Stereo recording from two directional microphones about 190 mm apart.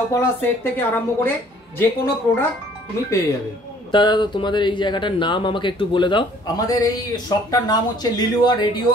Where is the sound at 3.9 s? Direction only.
25° left (ahead or behind).